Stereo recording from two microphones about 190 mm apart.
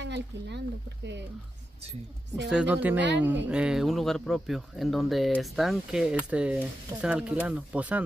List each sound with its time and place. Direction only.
0.0 s speech: 65° right (ahead or behind)
2.5 s speech: 5° right (ahead or behind)